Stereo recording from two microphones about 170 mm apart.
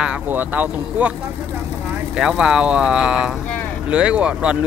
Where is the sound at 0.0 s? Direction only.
10° right (ahead or behind).